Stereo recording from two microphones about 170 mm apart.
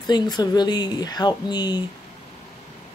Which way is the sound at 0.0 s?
25° left (ahead or behind).